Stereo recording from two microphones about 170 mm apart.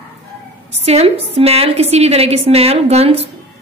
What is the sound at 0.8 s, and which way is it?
A woman's voice, 35° right (ahead or behind).